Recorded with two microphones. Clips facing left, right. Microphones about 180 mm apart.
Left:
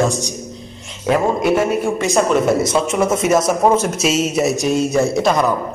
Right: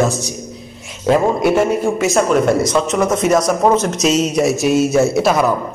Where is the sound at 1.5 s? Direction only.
5° right (ahead or behind).